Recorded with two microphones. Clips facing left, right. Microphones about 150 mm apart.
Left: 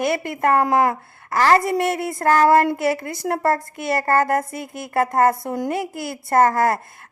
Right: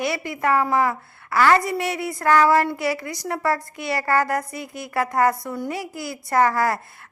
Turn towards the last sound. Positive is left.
turn(degrees=50)  # may be behind; listen again after turning